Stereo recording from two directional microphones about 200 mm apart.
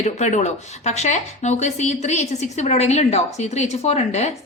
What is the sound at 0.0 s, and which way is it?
Speech, 35° left (ahead or behind).